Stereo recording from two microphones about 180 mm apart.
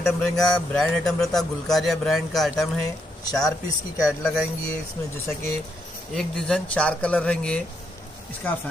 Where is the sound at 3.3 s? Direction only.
20° left (ahead or behind).